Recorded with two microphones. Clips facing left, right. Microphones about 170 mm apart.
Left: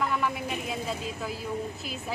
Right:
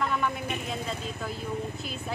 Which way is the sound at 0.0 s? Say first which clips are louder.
Even; 5° left (ahead or behind).